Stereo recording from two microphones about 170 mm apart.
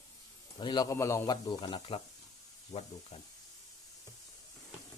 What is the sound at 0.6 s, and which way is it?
Speech, 25° left (ahead or behind).